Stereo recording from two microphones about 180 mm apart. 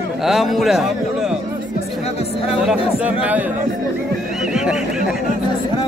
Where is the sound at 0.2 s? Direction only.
Centre (ahead or behind).